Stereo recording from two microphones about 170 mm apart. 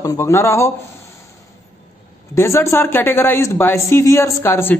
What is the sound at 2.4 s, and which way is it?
Speech, 15° left (ahead or behind).